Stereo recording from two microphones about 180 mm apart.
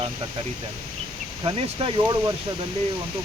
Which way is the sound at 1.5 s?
25° right (ahead or behind).